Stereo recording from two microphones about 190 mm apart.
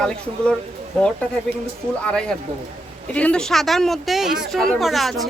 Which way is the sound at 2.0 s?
5° left (ahead or behind).